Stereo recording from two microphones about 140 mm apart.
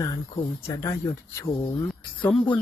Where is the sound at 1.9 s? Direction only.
Centre (ahead or behind).